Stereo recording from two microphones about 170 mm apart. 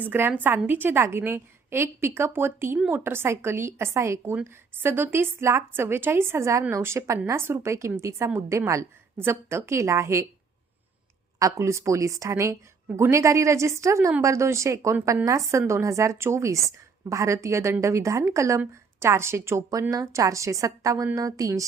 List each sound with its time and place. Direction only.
0.0 s a woman's voice: 10° right (ahead or behind)
11.3 s a woman's voice: 20° right (ahead or behind)